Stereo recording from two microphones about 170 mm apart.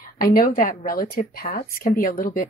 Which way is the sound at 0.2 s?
60° left (ahead or behind).